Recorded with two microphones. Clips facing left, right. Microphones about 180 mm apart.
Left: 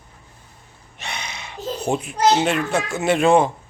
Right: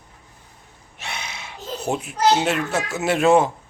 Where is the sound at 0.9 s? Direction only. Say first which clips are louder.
Left 1 dB; 5° right (ahead or behind).